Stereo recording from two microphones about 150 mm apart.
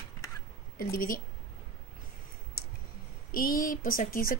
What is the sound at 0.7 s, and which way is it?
Speech, 75° left (ahead or behind).